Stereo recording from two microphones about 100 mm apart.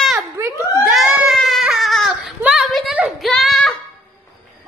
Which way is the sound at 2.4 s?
5° right (ahead or behind).